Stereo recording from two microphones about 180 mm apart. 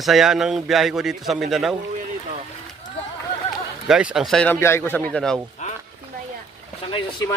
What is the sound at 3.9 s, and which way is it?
Speech, 5° right (ahead or behind).